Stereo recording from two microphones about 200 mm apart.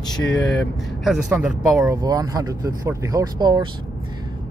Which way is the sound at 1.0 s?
Centre (ahead or behind).